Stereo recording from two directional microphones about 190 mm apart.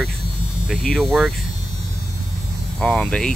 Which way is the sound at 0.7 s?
Centre (ahead or behind).